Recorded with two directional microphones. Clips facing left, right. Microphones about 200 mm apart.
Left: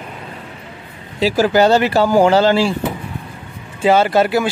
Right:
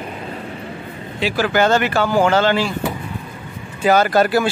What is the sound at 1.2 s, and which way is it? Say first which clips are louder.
Speech: left 4 dB; 40° left (ahead or behind).